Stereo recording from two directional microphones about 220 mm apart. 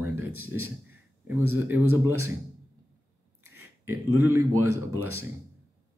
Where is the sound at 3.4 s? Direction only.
80° right.